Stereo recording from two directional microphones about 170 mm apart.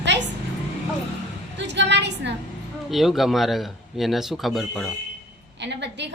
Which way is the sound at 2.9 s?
Centre (ahead or behind).